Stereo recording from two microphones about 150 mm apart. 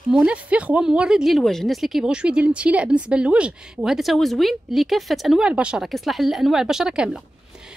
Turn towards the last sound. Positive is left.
turn(degrees=-5)  # may be behind; listen again after turning